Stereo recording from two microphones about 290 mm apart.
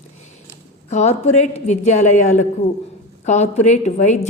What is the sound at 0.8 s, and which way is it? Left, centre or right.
A woman's voice, left.